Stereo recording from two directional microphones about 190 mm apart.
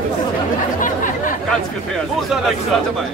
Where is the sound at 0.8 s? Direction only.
45° left (ahead or behind).